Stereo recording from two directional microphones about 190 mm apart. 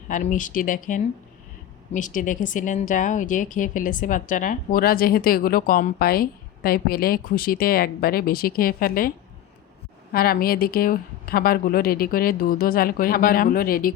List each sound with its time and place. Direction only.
0.1 s a woman's voice: 40° left (ahead or behind)